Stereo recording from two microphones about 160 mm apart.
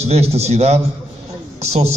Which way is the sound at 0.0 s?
40° right (ahead or behind).